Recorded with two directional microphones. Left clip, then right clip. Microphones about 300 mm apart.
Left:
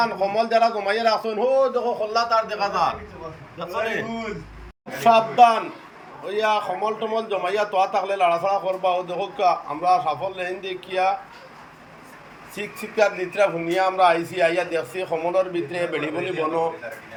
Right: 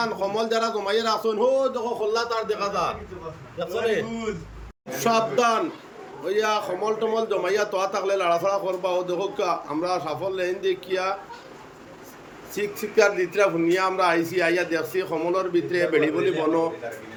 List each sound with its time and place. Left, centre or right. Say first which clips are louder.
0.0 s a man's voice: left 4 dB; centre
4.9 s a man's voice: left 7 dB; centre
12.5 s a man's voice: right 1 dB; centre